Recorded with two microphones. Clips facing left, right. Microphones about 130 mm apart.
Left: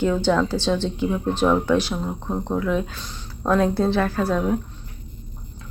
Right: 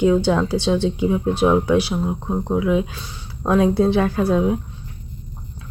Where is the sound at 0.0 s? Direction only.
10° right (ahead or behind).